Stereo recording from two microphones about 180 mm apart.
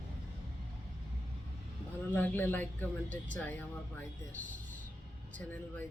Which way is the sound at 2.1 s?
10° left (ahead or behind).